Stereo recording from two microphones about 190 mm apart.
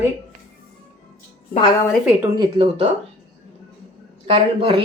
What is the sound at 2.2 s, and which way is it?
Speech, 25° right (ahead or behind).